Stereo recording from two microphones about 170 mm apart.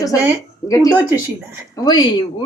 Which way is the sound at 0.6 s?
20° left (ahead or behind).